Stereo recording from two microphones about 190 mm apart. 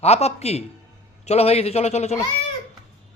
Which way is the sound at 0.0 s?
35° left (ahead or behind).